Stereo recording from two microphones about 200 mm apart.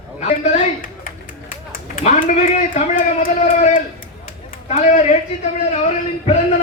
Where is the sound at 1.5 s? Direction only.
45° left (ahead or behind).